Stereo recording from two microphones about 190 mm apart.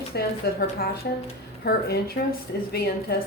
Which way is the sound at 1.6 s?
55° left (ahead or behind).